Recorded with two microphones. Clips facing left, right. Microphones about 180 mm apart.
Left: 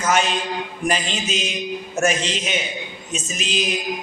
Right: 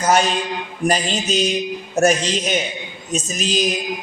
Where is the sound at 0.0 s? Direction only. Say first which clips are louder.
Right 3 dB; 35° right (ahead or behind).